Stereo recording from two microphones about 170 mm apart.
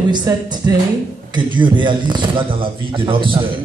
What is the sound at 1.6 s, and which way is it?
A man's voice, 30° right (ahead or behind).